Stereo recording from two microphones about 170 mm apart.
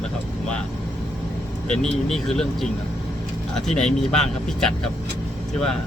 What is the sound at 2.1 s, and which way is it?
Speech, centre (ahead or behind).